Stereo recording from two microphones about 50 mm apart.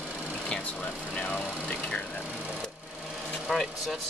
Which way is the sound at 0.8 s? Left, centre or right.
Left.